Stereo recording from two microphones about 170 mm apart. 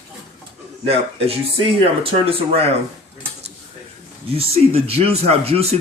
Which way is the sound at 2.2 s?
35° right (ahead or behind).